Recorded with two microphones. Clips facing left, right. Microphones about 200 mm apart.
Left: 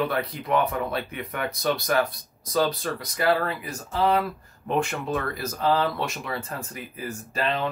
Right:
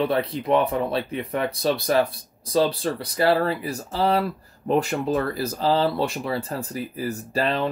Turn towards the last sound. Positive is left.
turn(degrees=-35)  # may be behind; listen again after turning